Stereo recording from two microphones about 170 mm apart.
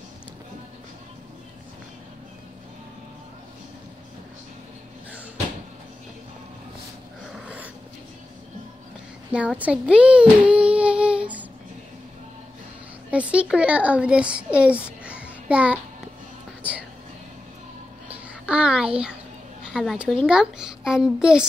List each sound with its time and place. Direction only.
7.3 s a sound: 5° right (ahead or behind)
9.3 s child singing: 5° right (ahead or behind)
13.1 s a child's voice: 5° right (ahead or behind)
18.1 s babbling: 5° right (ahead or behind)
19.6 s a child's voice: 5° right (ahead or behind)